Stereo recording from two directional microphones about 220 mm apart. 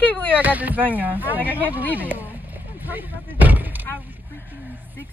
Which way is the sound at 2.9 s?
10° right (ahead or behind).